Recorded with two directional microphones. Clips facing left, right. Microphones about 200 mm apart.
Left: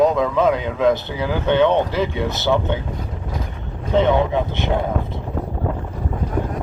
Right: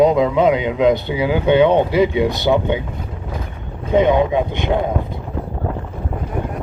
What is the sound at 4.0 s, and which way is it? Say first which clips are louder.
Speech: right 2 dB; 15° right (ahead or behind).